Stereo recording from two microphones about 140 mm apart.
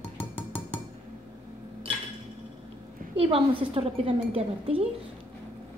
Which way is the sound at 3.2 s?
40° right (ahead or behind).